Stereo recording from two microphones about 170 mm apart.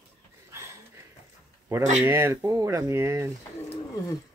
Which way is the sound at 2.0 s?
15° right (ahead or behind).